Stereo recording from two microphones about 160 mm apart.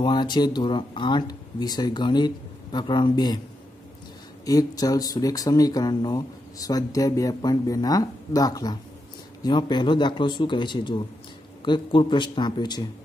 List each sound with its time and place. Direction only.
0.0 s speech: 30° left (ahead or behind)
4.5 s speech: 20° left (ahead or behind)